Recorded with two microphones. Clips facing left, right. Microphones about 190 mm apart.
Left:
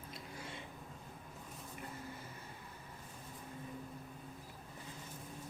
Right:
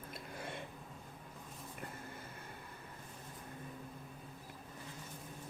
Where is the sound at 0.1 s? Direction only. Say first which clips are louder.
Right 3 dB; 55° right (ahead or behind).